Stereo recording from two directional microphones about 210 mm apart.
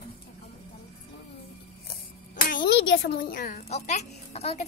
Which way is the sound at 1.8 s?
40° left (ahead or behind).